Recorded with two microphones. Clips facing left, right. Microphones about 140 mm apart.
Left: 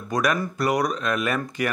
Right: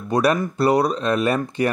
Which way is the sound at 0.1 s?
30° right (ahead or behind).